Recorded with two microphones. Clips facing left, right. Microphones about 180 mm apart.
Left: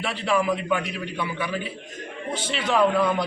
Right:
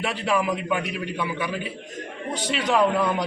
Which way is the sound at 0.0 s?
10° right (ahead or behind).